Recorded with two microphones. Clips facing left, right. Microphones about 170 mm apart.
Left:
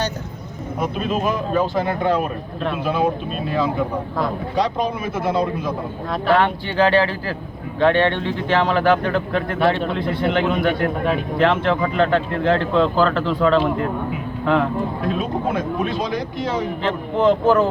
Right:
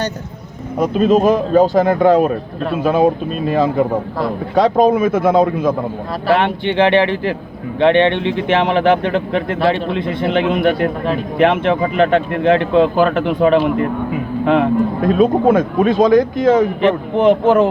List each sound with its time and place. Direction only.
0.9 s speech: 40° right (ahead or behind)
4.5 s speech: 50° right (ahead or behind)
6.3 s a man's voice: 20° right (ahead or behind)
8.2 s speech: 70° right (ahead or behind)
8.4 s a man's voice: 20° right (ahead or behind)
15.0 s speech: 50° right (ahead or behind)
17.2 s a man's voice: 20° right (ahead or behind)